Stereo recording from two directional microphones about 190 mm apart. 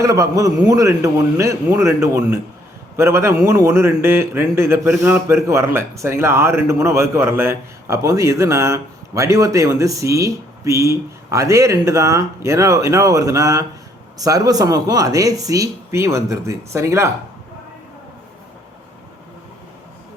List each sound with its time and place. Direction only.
0.0 s a man's voice: 15° right (ahead or behind)